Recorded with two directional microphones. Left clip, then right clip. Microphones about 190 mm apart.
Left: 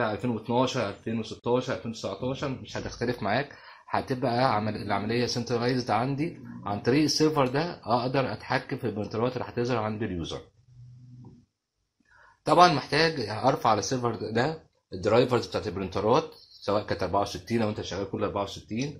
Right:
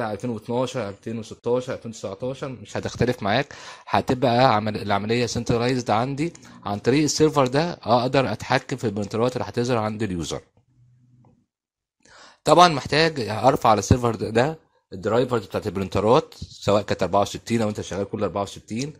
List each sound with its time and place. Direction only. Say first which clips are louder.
0.0 s speech: right 1 dB; 50° right (ahead or behind)
12.4 s speech: right 4 dB; 50° right (ahead or behind)